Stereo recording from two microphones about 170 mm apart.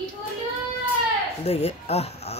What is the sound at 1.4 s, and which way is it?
Speech, 35° left (ahead or behind).